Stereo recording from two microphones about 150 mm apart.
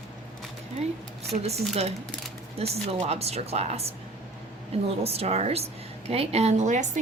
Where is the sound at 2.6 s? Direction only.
45° right (ahead or behind).